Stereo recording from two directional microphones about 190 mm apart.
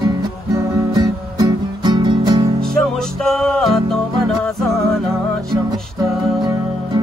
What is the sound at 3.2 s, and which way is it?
Music, centre (ahead or behind).